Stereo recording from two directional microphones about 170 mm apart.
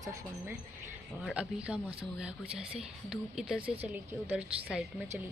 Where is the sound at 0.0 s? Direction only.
20° right (ahead or behind).